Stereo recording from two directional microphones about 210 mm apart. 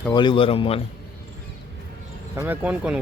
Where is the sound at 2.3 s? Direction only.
10° right (ahead or behind).